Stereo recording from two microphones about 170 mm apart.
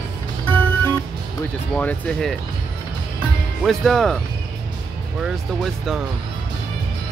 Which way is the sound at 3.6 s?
Centre (ahead or behind).